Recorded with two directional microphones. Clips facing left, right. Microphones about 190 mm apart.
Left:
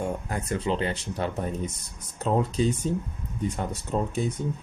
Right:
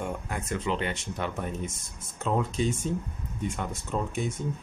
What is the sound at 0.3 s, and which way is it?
Speech, 35° left (ahead or behind).